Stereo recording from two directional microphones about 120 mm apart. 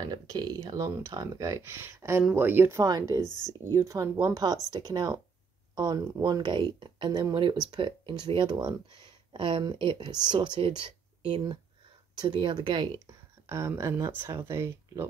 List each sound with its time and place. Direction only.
0.0 s speech: 35° right (ahead or behind); by 2.8 s 20° right (ahead or behind)
2.8 s speech: 30° right (ahead or behind)
13.0 s speech: 25° right (ahead or behind)